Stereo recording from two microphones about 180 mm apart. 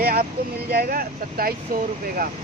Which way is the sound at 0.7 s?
60° right (ahead or behind).